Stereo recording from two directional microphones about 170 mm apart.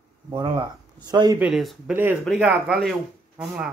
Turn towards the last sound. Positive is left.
turn(degrees=-10)  # may be behind; listen again after turning